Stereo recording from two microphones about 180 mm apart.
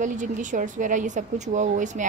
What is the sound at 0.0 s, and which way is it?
A woman's voice, 45° right (ahead or behind).